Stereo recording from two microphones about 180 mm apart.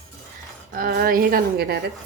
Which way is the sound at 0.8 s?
55° right (ahead or behind).